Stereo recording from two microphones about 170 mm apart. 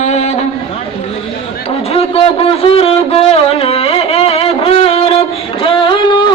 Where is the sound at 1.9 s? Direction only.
35° left (ahead or behind).